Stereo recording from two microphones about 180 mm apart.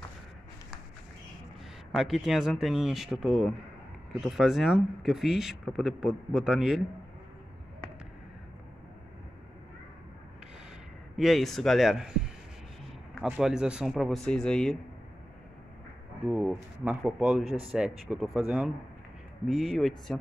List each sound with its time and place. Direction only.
1.9 s speech: centre (ahead or behind)
11.1 s speech: centre (ahead or behind)
16.3 s speech: 5° right (ahead or behind)